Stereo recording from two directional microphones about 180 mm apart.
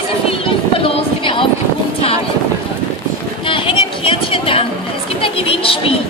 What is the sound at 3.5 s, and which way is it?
A woman's voice, 30° left (ahead or behind).